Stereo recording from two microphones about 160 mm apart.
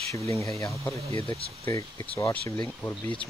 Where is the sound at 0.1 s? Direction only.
20° left (ahead or behind).